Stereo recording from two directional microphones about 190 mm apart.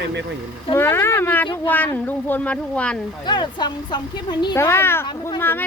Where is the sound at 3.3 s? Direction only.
20° left (ahead or behind).